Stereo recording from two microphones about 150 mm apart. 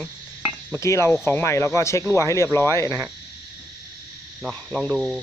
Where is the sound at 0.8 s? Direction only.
20° left (ahead or behind).